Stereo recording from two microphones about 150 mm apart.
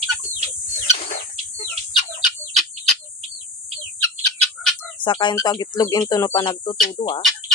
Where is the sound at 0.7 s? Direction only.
65° left (ahead or behind).